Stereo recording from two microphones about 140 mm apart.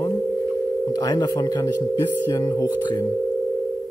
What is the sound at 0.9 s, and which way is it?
Speech, 30° left (ahead or behind).